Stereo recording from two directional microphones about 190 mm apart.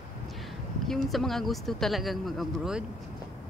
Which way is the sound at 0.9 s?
Centre (ahead or behind).